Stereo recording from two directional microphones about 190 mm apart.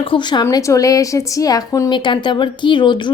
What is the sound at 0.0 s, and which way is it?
A woman's voice, 25° left (ahead or behind).